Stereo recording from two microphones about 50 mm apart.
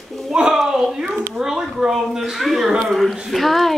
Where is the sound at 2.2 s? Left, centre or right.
Centre.